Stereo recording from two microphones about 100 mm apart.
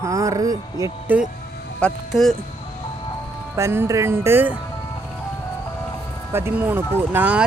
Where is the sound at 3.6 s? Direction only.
30° right (ahead or behind).